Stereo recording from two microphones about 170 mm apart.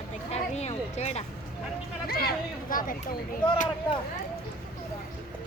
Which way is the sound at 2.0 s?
60° left (ahead or behind).